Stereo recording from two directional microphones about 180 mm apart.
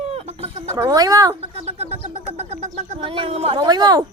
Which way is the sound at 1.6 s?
35° right (ahead or behind).